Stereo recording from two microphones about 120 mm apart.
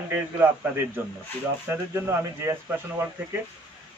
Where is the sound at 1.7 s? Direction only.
20° right (ahead or behind).